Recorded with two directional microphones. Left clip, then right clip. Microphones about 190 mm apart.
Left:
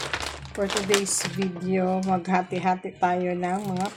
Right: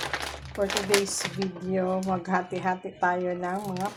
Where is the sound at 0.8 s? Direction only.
20° left (ahead or behind).